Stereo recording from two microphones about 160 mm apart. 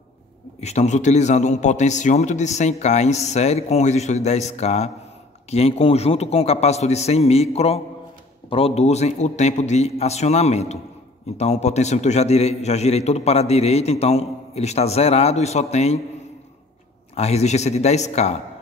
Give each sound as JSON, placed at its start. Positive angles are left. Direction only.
{"t": 0.6, "sound": "a man's voice", "side_deg": 45}
{"t": 17.1, "sound": "a man's voice", "side_deg": 40}